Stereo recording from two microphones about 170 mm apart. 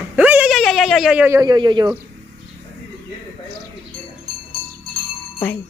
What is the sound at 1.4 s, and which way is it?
Speech, 25° right (ahead or behind).